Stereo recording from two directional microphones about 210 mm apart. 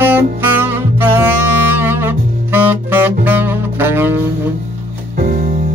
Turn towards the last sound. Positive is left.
turn(degrees=-40)  # may be behind; listen again after turning